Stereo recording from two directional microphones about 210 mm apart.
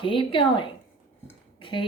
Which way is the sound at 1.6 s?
25° left (ahead or behind).